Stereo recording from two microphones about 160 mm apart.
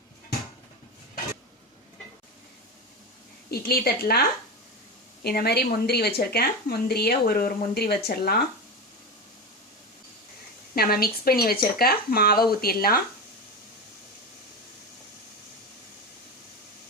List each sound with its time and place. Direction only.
3.5 s speech: 70° left (ahead or behind)
10.8 s speech: 70° left (ahead or behind)